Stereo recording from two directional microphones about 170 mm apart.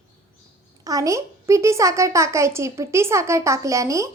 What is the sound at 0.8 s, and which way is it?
A woman's voice, 20° right (ahead or behind).